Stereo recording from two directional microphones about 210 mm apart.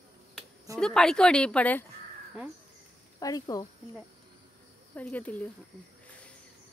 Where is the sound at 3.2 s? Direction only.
15° left (ahead or behind).